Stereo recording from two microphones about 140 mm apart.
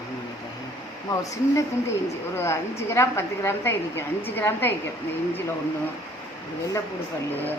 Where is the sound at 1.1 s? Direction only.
25° left (ahead or behind).